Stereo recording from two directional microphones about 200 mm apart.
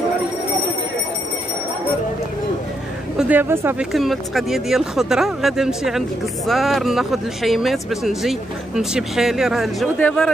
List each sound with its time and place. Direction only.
3.2 s speech: 10° right (ahead or behind)
3.9 s speech: centre (ahead or behind)